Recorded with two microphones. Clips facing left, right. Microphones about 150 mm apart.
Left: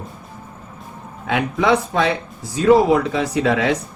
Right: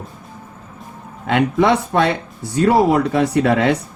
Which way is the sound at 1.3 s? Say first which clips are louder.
Right 3 dB; 70° right (ahead or behind).